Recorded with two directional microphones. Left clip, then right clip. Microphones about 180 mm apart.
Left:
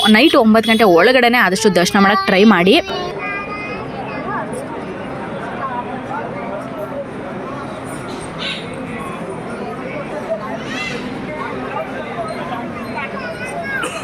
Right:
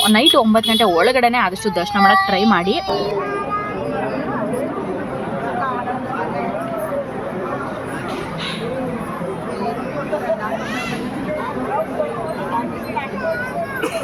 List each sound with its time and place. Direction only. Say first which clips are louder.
0.0 s speech: left 2 dB; 10° left (ahead or behind)